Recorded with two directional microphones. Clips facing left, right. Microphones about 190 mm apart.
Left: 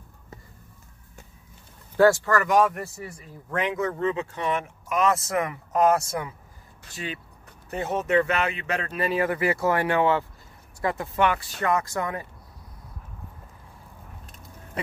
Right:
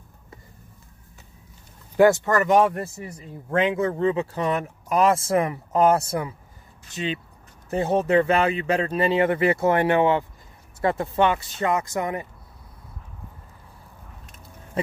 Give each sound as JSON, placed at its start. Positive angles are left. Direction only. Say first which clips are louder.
{"t": 2.0, "sound": "speech", "louder": "right 2 dB", "side_deg": -20}
{"t": 6.9, "sound": "speech", "louder": "right 6 dB", "side_deg": -20}
{"t": 7.7, "sound": "speech", "louder": "right 4 dB", "side_deg": -30}